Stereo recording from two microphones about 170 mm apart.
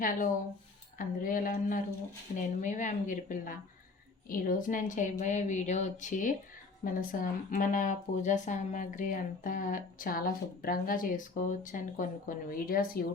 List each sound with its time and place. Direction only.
0.0 s speech: 50° left (ahead or behind)